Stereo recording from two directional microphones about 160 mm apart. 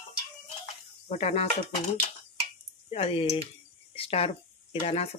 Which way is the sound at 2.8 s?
35° left (ahead or behind).